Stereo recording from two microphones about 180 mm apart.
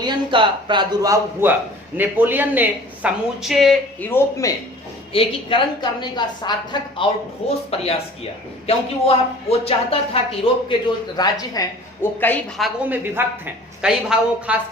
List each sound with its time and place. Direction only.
0.0 s a man's voice: 25° right (ahead or behind); by 3.8 s centre (ahead or behind)
4.1 s speech: 15° left (ahead or behind)
5.1 s a woman's voice: 30° left (ahead or behind)
12.2 s a woman's voice: 5° left (ahead or behind)